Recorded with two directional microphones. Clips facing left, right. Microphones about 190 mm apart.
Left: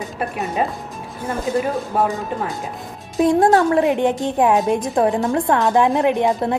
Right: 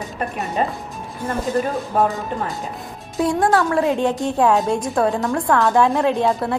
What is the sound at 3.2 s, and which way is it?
A woman's voice, 20° left (ahead or behind).